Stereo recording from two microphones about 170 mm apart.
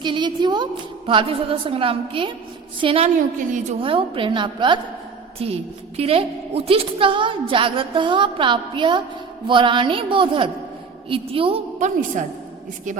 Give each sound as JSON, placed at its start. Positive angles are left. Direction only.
{"t": 0.0, "sound": "a woman's voice", "side_deg": -25}
{"t": 11.8, "sound": "a woman's voice", "side_deg": -45}